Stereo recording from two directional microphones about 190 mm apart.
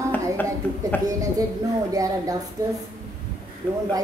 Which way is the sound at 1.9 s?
20° right (ahead or behind).